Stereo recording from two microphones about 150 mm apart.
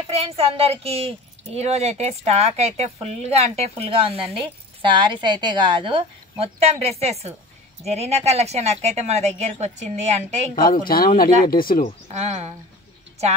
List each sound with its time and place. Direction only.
0.1 s a woman's voice: 40° right (ahead or behind)
10.5 s speech: 75° left (ahead or behind)
12.1 s a woman's voice: 45° right (ahead or behind)